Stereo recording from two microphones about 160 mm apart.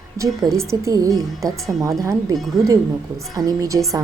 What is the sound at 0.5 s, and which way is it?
A woman's voice, 20° right (ahead or behind).